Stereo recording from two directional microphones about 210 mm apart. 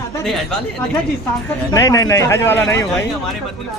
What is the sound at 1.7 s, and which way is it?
Speech, 15° left (ahead or behind).